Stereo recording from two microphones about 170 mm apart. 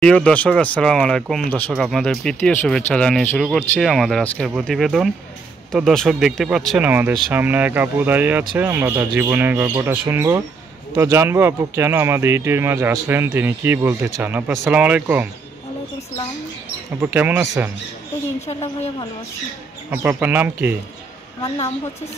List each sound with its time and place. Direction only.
0.0 s speech: 5° left (ahead or behind)
6.8 s speech: 10° right (ahead or behind)
17.0 s speech: 10° right (ahead or behind)
18.5 s a woman's voice: 35° left (ahead or behind)
19.9 s speech: 10° right (ahead or behind)